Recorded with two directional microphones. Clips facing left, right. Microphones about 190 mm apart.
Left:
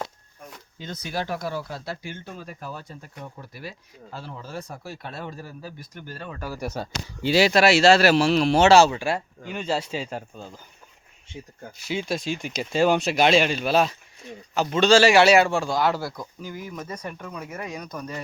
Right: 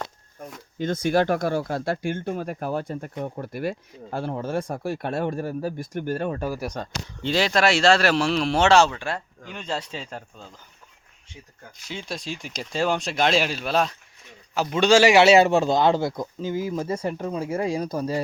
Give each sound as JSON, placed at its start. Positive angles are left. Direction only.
{"t": 0.8, "sound": "speech", "side_deg": -50}
{"t": 6.6, "sound": "speech", "side_deg": 5}
{"t": 11.8, "sound": "a man's voice", "side_deg": 10}